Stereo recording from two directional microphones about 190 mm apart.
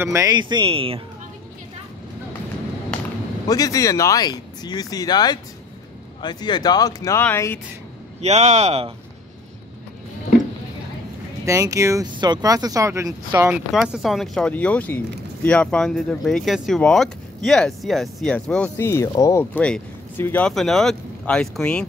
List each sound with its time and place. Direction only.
0.0 s speech: 15° right (ahead or behind)
3.4 s speech: 20° left (ahead or behind)
8.2 s speech: 35° right (ahead or behind)
11.4 s speech: 15° right (ahead or behind)
13.7 s speech: centre (ahead or behind)